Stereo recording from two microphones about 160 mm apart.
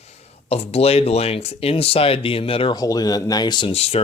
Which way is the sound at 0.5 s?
40° left (ahead or behind).